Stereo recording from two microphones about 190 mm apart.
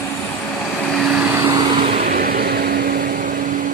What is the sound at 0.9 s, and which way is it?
Vehicle, 5° right (ahead or behind).